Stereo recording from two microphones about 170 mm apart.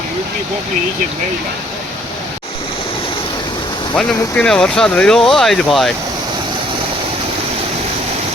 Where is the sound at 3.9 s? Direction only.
5° left (ahead or behind).